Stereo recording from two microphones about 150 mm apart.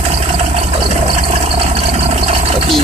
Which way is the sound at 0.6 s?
40° right (ahead or behind).